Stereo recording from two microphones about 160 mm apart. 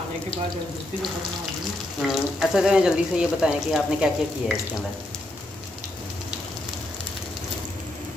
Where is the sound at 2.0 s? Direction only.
Centre (ahead or behind).